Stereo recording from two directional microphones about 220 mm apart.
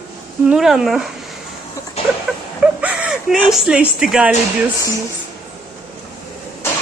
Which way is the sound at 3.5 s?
5° right (ahead or behind).